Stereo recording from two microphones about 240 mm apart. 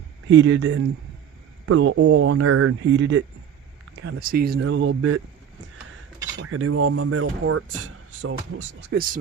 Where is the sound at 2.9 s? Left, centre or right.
Right.